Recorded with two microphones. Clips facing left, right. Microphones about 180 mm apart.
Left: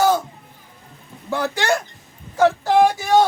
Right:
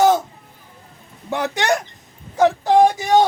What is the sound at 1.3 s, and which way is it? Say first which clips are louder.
Speech: right 1 dB; 20° right (ahead or behind).